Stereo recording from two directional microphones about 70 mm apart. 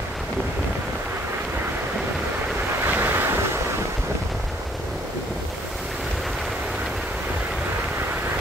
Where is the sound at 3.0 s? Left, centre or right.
Right.